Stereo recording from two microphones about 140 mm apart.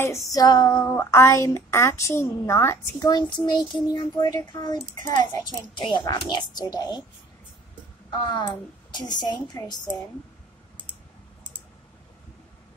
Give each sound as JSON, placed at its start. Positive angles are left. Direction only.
{"t": 0.0, "sound": "speech", "side_deg": 25}
{"t": 8.2, "sound": "speech", "side_deg": 35}